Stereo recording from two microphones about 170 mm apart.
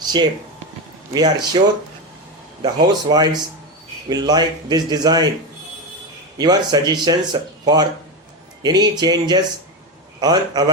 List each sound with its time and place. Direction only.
0.0 s a sound: 25° right (ahead or behind)
1.1 s speech: 25° right (ahead or behind)
6.3 s speech: 25° right (ahead or behind)